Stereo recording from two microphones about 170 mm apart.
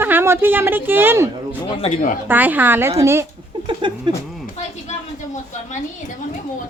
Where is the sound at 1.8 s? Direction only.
45° left (ahead or behind).